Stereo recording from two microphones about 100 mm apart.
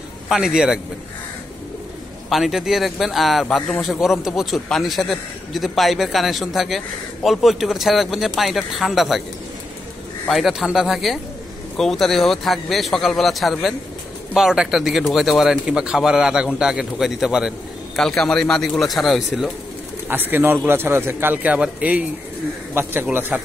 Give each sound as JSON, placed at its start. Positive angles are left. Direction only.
{"t": 0.3, "sound": "a man's voice", "side_deg": -5}
{"t": 2.2, "sound": "speech", "side_deg": 0}
{"t": 10.2, "sound": "speech", "side_deg": 0}
{"t": 17.9, "sound": "speech", "side_deg": 5}
{"t": 20.1, "sound": "speech", "side_deg": -20}
{"t": 22.8, "sound": "speech", "side_deg": -25}